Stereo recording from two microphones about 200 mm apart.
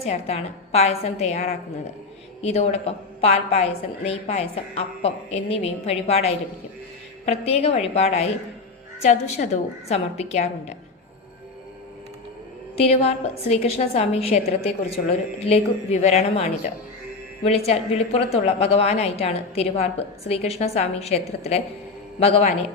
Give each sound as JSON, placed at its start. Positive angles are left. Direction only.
{"t": 0.0, "sound": "a woman's voice", "side_deg": 30}
{"t": 12.8, "sound": "a woman's voice", "side_deg": 30}
{"t": 15.4, "sound": "a woman's voice", "side_deg": 30}